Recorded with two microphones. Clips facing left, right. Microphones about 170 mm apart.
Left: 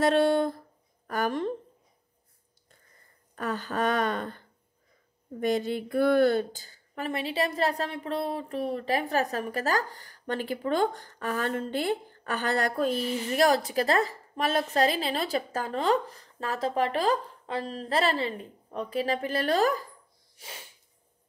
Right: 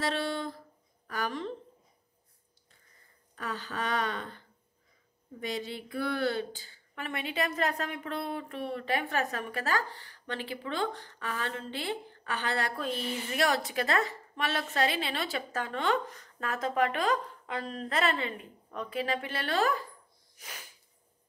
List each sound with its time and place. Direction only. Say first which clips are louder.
0.0 s speech: left 10 dB; 50° left (ahead or behind)
3.3 s speech: left 7 dB; 50° left (ahead or behind)
5.4 s a woman's voice: left 9 dB; 50° left (ahead or behind)
20.3 s sneeze: left 2 dB; 30° left (ahead or behind)